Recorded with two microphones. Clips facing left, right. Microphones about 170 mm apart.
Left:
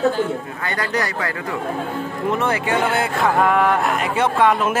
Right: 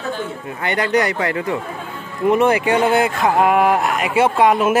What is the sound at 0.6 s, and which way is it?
Speech, 20° right (ahead or behind).